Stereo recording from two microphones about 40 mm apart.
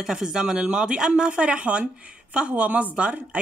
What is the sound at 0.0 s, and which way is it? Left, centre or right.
A woman's voice, centre.